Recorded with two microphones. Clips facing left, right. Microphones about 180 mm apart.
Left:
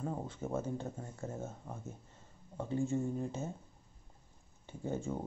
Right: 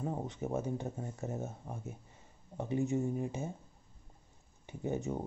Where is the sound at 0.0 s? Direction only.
20° right (ahead or behind).